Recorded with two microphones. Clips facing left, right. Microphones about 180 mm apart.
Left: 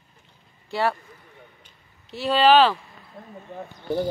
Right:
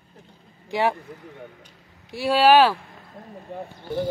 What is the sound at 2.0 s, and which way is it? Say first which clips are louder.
Speech: right 1 dB; 10° right (ahead or behind).